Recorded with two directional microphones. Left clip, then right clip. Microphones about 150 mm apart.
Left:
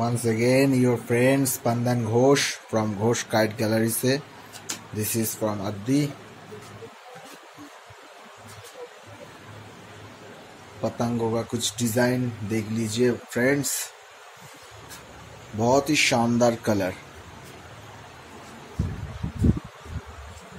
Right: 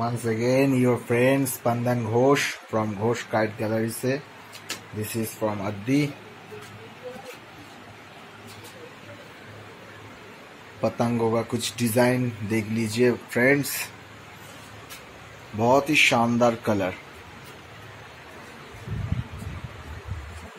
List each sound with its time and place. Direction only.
0.0 s speech: 25° left (ahead or behind)
0.7 s speech: centre (ahead or behind)
1.2 s speech: 15° left (ahead or behind); by 4.2 s 30° left (ahead or behind)
5.4 s a man's voice: 10° left (ahead or behind)
10.8 s speech: 15° right (ahead or behind)
15.6 s a man's voice: 10° left (ahead or behind)